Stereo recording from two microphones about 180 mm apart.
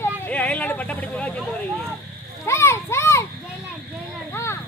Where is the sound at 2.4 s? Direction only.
15° left (ahead or behind).